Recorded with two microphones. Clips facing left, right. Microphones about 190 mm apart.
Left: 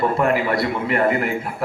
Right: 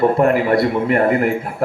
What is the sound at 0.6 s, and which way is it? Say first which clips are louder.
Speech: right 5 dB; 50° right (ahead or behind).